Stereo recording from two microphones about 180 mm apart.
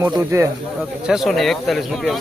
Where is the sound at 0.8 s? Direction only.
Centre (ahead or behind).